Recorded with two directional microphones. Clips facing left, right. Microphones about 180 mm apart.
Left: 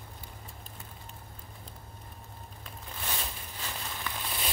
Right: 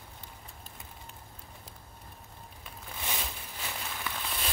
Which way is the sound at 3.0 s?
10° right (ahead or behind).